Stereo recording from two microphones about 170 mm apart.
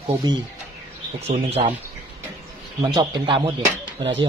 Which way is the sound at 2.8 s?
25° right (ahead or behind).